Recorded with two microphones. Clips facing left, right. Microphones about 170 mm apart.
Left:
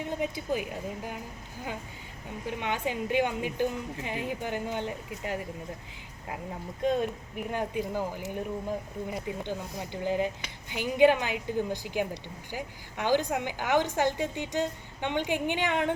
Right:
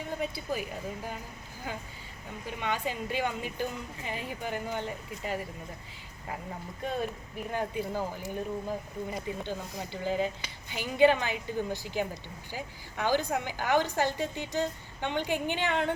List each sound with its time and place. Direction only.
0.1 s a woman's voice: 15° left (ahead or behind)
2.6 s a woman's voice: 15° left (ahead or behind)
6.8 s a woman's voice: 20° left (ahead or behind)